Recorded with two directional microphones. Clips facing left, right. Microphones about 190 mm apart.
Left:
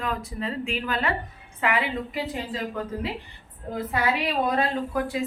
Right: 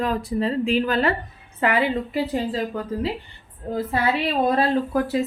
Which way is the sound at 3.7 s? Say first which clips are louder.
Right 3 dB; 30° right (ahead or behind).